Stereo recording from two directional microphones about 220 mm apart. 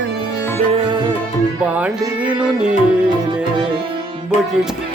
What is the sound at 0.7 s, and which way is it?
Tabla, 20° right (ahead or behind).